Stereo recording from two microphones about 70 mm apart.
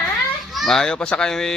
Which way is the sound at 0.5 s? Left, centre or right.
Centre.